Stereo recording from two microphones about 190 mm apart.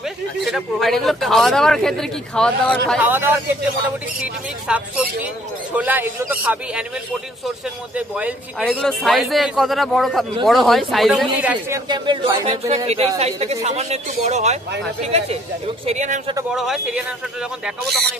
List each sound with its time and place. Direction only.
0.5 s a man's voice: centre (ahead or behind)
3.0 s a man's voice: 10° right (ahead or behind)
11.9 s speech: 25° right (ahead or behind)
16.5 s a man's voice: centre (ahead or behind)